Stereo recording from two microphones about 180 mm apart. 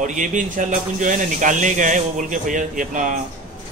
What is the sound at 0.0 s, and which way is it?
Speech, 45° right (ahead or behind).